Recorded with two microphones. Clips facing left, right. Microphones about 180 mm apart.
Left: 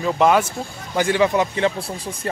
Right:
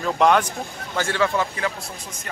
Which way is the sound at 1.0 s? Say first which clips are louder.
Left 5 dB; 15° left (ahead or behind).